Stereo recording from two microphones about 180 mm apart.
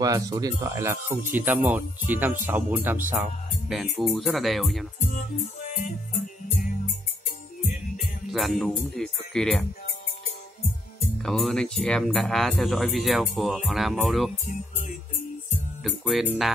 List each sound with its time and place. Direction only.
0.0 s speech: 20° right (ahead or behind); by 4.8 s centre (ahead or behind)
5.8 s music: 45° left (ahead or behind)
8.0 s speech: centre (ahead or behind)
11.2 s speech: centre (ahead or behind)
15.8 s speech: centre (ahead or behind)